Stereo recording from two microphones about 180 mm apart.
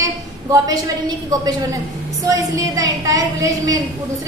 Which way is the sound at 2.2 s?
20° right (ahead or behind).